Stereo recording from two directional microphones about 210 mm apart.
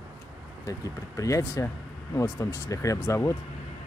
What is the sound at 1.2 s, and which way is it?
Speech, 15° left (ahead or behind).